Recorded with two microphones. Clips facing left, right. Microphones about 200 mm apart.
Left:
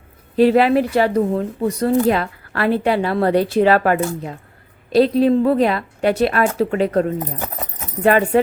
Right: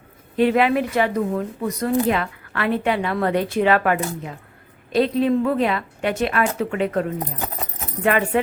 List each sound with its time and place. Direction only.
0.3 s speech: 35° left (ahead or behind)
8.0 s speech: 35° left (ahead or behind)